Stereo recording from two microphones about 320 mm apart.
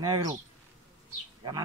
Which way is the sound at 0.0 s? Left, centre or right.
Centre.